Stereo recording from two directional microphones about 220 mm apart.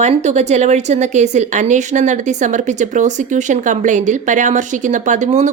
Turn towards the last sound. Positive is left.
turn(degrees=-35)  # may be behind; listen again after turning